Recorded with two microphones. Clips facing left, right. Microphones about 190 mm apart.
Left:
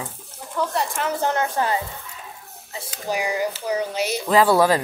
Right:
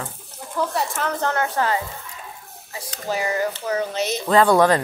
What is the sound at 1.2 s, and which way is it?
Speech, 15° left (ahead or behind).